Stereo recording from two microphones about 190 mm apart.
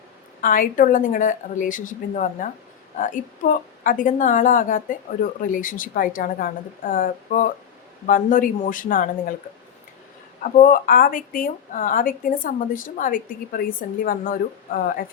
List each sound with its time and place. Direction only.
0.4 s a woman's voice: 45° left (ahead or behind)
10.4 s a woman's voice: 45° left (ahead or behind)